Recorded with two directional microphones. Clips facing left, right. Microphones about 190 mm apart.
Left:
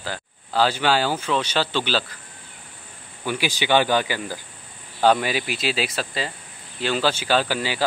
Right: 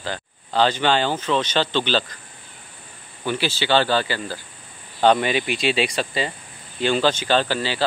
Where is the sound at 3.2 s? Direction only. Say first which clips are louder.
Right 1 dB; 10° left (ahead or behind).